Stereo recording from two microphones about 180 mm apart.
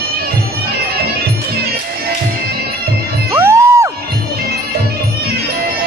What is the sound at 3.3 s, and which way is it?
Music, 15° right (ahead or behind).